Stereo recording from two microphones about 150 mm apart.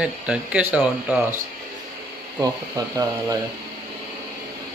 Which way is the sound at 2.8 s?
25° right (ahead or behind).